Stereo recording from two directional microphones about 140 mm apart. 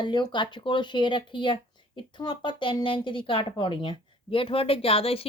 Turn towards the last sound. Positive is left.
turn(degrees=45)  # may be behind; listen again after turning